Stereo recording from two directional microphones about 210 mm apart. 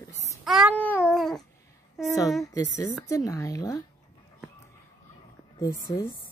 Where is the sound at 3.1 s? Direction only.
15° left (ahead or behind).